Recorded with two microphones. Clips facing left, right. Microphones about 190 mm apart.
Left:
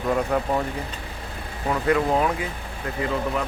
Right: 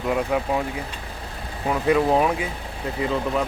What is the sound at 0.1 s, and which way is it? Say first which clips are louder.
Speech: even; 5° right (ahead or behind).